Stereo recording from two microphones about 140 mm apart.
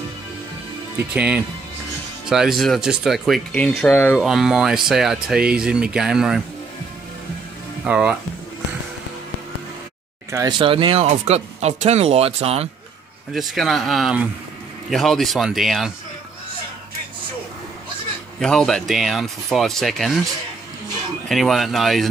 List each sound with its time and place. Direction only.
1.1 s speech: 10° right (ahead or behind)
3.5 s speech: 10° left (ahead or behind)
4.2 s speech: centre (ahead or behind)
7.8 s speech: 10° right (ahead or behind)
10.6 s speech: 40° right (ahead or behind)
11.1 s speech: 50° right (ahead or behind)
13.3 s speech: centre (ahead or behind)
18.4 s speech: 5° left (ahead or behind)
21.3 s speech: centre (ahead or behind)